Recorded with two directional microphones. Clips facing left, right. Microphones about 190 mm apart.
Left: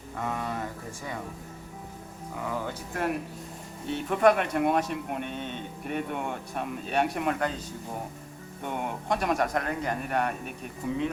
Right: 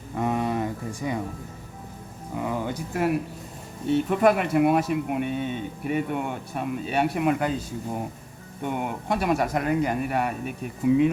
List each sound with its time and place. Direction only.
0.2 s a sound: 20° right (ahead or behind)
2.4 s speech: 20° right (ahead or behind)
2.9 s speech: 5° right (ahead or behind)
8.6 s speech: 5° right (ahead or behind)